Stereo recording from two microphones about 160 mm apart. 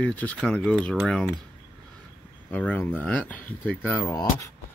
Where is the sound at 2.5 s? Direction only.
10° left (ahead or behind).